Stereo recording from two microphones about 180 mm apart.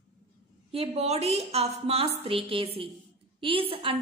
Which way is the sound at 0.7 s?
35° right (ahead or behind).